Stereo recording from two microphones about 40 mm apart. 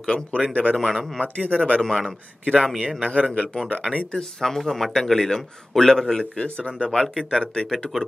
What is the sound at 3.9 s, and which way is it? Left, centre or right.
Speech, centre.